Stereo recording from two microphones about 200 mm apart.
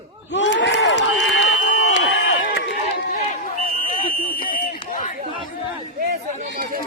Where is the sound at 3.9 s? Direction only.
40° left (ahead or behind).